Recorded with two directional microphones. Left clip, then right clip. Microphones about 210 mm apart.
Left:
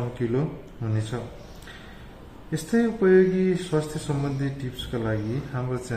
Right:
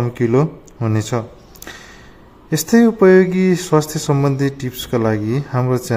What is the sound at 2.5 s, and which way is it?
Speech, 50° right (ahead or behind).